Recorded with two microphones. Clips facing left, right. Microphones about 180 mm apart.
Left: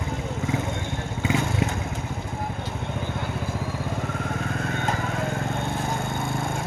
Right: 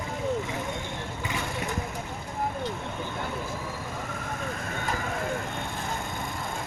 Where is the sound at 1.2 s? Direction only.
90° left.